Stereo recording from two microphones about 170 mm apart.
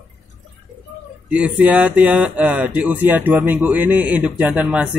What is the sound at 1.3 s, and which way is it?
Speech, 5° right (ahead or behind).